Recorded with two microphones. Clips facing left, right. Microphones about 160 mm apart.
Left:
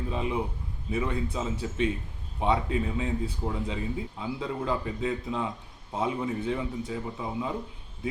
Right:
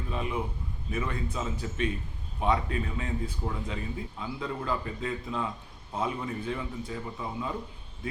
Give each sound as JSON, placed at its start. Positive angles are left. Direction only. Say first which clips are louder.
{"t": 0.1, "sound": "speech", "louder": "left 1 dB", "side_deg": 20}